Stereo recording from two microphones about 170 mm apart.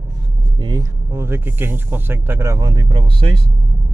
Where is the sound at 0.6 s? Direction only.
25° right (ahead or behind).